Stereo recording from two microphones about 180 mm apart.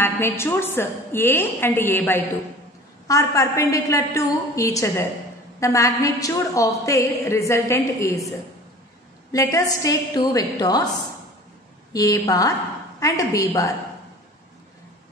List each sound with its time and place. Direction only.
0.0 s a woman's voice: 15° left (ahead or behind)
9.3 s a woman's voice: 20° left (ahead or behind)
11.9 s a woman's voice: 20° left (ahead or behind)